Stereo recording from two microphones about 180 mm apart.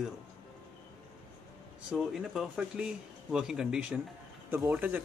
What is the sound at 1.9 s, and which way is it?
Speech, 5° right (ahead or behind).